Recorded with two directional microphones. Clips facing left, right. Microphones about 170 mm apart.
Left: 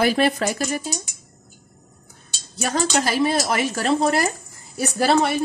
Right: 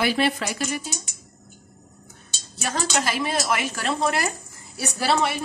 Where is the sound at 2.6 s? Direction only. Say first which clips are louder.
Left 4 dB; 35° left (ahead or behind).